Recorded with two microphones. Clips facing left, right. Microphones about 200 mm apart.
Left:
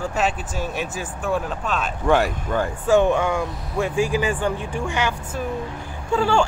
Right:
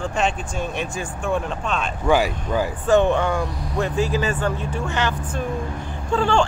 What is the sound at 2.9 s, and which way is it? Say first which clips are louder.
Speech: even; 10° left (ahead or behind).